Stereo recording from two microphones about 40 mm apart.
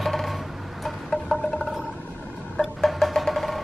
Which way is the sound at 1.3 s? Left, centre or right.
Left.